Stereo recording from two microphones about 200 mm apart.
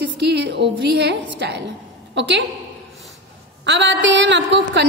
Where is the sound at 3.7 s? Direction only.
65° right (ahead or behind).